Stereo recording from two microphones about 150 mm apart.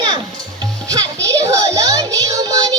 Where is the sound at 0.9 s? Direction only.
25° right (ahead or behind).